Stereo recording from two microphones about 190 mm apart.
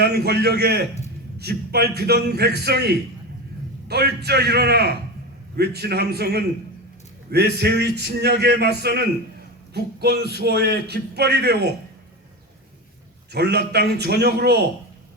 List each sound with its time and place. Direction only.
0.0 s a man's voice: 55° right (ahead or behind)
7.6 s a man's voice: 60° right (ahead or behind)
13.3 s a man's voice: 60° right (ahead or behind)